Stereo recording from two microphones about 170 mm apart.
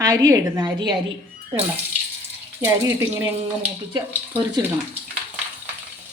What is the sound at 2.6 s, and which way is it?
Speech, 15° right (ahead or behind).